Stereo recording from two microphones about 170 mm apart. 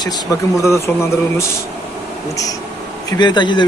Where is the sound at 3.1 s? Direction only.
25° left (ahead or behind).